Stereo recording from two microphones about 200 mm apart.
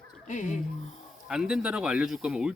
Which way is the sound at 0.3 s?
40° left (ahead or behind).